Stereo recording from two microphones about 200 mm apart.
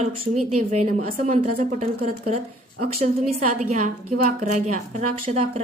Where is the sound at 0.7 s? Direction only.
35° right (ahead or behind).